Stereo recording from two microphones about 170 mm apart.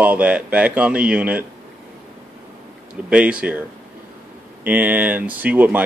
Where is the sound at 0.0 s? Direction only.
10° right (ahead or behind).